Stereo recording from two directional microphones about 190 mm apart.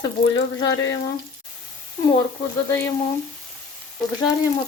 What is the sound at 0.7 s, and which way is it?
Frying, 75° left (ahead or behind).